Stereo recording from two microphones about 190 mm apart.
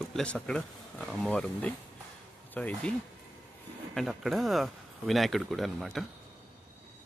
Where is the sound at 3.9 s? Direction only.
Centre (ahead or behind).